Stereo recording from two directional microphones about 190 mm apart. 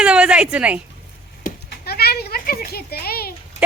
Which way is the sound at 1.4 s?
55° left (ahead or behind).